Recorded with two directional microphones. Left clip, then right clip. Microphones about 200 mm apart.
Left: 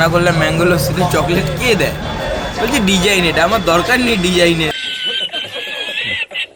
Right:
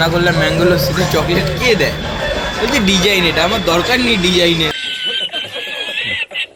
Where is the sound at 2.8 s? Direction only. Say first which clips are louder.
Right 2 dB; 35° left (ahead or behind).